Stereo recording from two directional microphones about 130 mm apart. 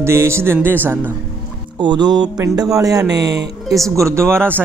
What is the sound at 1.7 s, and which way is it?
Speech, 35° right (ahead or behind).